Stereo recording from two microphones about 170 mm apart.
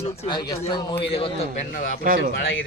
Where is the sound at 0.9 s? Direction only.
35° left (ahead or behind).